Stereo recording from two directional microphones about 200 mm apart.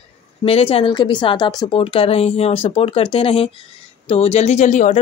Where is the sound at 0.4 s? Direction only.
30° left (ahead or behind).